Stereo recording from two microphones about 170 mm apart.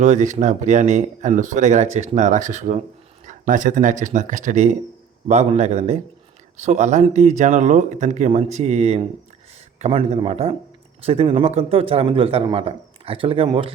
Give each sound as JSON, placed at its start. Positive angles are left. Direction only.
{"t": 0.0, "sound": "a man's voice", "side_deg": -45}